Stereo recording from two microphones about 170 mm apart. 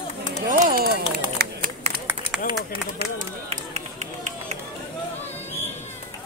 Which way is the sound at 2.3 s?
5° right (ahead or behind).